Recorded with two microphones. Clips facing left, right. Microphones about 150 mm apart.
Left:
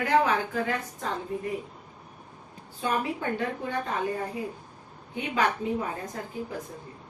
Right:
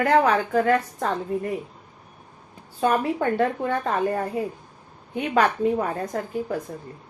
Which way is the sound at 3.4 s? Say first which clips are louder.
Right 7 dB; 60° right (ahead or behind).